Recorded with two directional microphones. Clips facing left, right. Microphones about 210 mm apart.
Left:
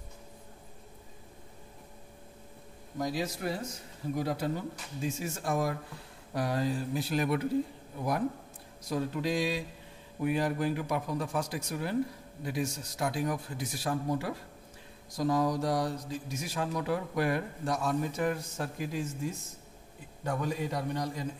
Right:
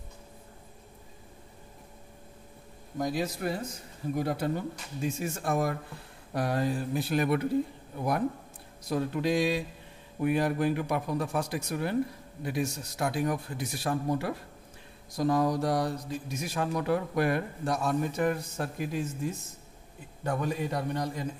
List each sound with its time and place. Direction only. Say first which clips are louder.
3.0 s speech: right 2 dB; 55° right (ahead or behind)
8.8 s speech: right 3 dB; 60° right (ahead or behind)
20.2 s speech: right 2 dB; 55° right (ahead or behind)